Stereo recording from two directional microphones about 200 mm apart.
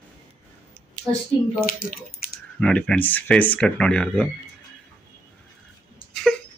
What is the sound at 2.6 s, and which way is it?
Speech, 5° left (ahead or behind).